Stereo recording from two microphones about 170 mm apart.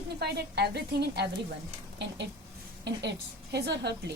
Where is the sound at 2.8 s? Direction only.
85° right.